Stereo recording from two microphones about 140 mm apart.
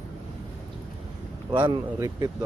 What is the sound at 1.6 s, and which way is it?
Speech, 30° right (ahead or behind).